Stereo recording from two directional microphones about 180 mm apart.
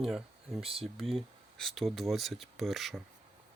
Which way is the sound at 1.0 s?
Centre (ahead or behind).